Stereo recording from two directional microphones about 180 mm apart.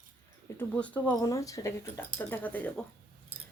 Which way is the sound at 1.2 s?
20° left (ahead or behind).